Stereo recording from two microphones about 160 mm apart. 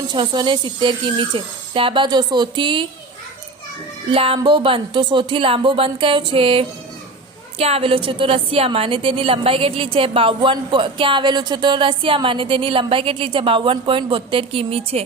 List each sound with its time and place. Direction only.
0.1 s a woman's voice: 30° right (ahead or behind)
4.1 s a woman's voice: 35° right (ahead or behind)